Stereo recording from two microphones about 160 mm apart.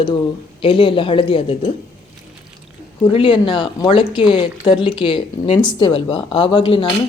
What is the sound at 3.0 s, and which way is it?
A woman's voice, 30° left (ahead or behind).